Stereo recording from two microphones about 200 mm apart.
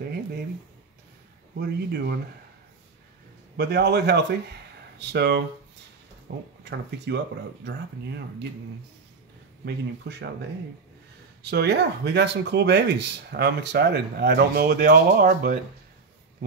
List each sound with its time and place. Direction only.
1.6 s speech: 55° right (ahead or behind)
3.5 s speech: 55° right (ahead or behind)
9.7 s speech: 60° right (ahead or behind)
11.4 s speech: 55° right (ahead or behind)